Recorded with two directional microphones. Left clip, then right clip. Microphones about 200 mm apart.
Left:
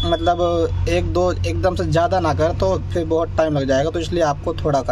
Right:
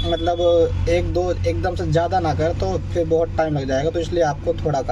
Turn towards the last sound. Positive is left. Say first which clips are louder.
# left 1 dB
turn(degrees=25)  # may be behind; listen again after turning